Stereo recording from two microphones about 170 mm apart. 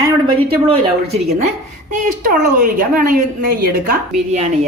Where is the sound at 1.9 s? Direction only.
50° right (ahead or behind).